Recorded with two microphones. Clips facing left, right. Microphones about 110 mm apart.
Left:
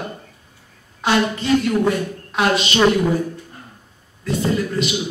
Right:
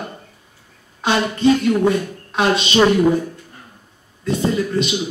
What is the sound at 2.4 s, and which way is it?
Music, 25° right (ahead or behind).